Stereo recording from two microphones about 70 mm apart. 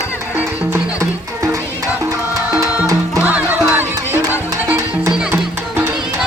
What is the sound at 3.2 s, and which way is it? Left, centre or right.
Music, right.